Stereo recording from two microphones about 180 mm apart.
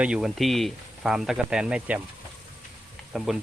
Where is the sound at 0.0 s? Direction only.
5° right (ahead or behind).